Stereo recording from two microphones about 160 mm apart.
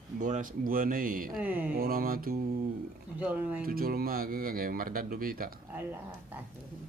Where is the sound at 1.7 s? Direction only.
65° right (ahead or behind).